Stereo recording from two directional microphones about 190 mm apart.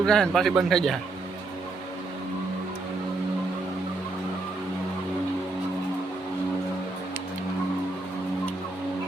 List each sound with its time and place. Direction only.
0.0 s speech: 5° left (ahead or behind)